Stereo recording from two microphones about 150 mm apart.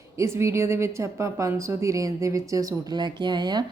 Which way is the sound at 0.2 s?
20° right (ahead or behind).